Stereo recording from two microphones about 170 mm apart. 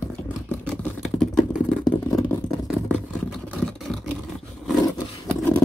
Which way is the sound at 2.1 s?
20° left (ahead or behind).